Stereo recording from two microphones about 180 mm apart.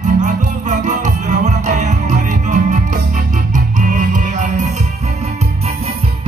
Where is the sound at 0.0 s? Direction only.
45° right (ahead or behind).